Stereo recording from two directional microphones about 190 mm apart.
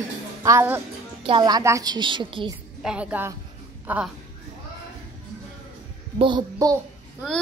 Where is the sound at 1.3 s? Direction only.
20° right (ahead or behind).